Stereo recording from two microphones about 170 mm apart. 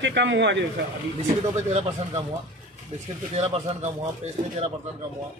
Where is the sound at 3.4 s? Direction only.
40° right (ahead or behind).